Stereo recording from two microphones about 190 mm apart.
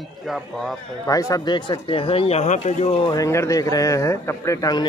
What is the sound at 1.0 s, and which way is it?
A man's voice, 20° left (ahead or behind).